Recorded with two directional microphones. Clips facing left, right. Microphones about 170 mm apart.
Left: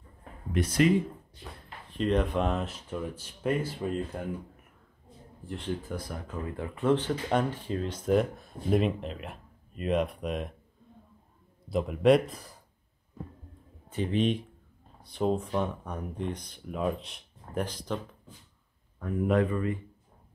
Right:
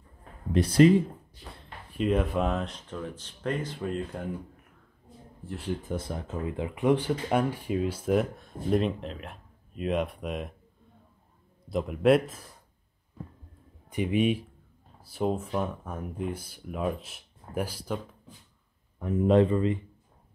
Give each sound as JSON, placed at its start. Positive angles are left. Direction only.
{"t": 0.5, "sound": "speech", "side_deg": -30}
{"t": 1.9, "sound": "speech", "side_deg": -5}
{"t": 5.4, "sound": "speech", "side_deg": 0}
{"t": 5.8, "sound": "speech", "side_deg": -20}
{"t": 11.7, "sound": "speech", "side_deg": 0}
{"t": 13.8, "sound": "speech", "side_deg": -15}
{"t": 18.9, "sound": "speech", "side_deg": -20}